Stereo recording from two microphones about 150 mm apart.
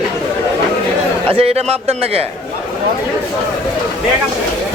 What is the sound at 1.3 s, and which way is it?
Speech, 40° right (ahead or behind).